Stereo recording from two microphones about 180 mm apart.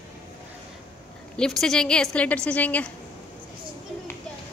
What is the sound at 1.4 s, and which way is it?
A woman's voice, 5° left (ahead or behind).